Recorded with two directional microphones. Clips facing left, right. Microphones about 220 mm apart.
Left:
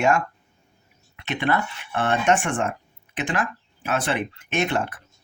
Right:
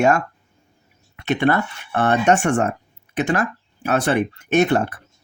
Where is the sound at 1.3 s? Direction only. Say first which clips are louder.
Right 6 dB; 45° right (ahead or behind).